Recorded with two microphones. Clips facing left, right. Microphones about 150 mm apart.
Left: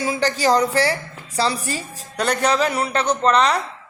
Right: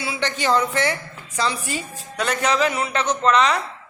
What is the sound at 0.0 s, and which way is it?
A woman's voice, 40° left (ahead or behind).